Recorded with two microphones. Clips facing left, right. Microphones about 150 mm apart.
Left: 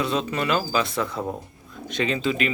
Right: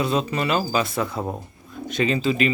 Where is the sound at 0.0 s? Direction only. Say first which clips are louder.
Right 2 dB; 40° right (ahead or behind).